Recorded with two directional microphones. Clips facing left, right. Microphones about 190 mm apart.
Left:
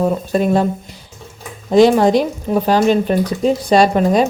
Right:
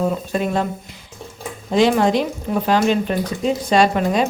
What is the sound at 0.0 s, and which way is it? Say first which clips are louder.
Speech: left 4 dB; 40° left (ahead or behind).